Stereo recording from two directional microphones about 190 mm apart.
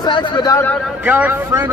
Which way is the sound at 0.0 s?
25° left (ahead or behind).